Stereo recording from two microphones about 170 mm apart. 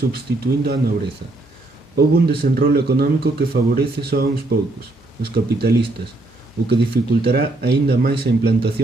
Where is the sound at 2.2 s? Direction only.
70° right (ahead or behind).